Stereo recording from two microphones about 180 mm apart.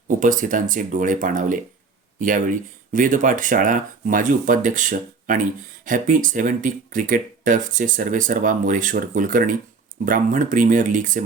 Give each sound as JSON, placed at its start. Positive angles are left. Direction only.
{"t": 0.1, "sound": "speech", "side_deg": -45}